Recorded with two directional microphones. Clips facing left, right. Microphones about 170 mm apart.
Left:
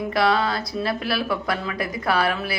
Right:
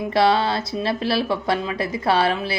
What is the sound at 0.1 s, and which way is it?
Speech, 30° right (ahead or behind).